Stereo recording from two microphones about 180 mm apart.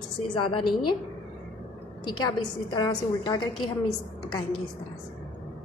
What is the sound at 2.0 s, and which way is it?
A woman's voice, 25° left (ahead or behind).